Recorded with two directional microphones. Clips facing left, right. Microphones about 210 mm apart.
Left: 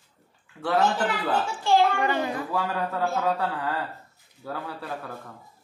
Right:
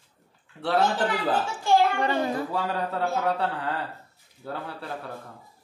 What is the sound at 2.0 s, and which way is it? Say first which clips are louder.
A man's voice: right 1 dB; 30° right (ahead or behind).